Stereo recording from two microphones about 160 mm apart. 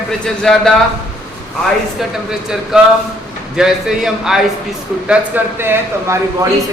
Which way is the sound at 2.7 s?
5° right (ahead or behind).